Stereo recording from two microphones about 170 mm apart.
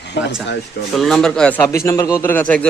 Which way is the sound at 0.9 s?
Centre (ahead or behind).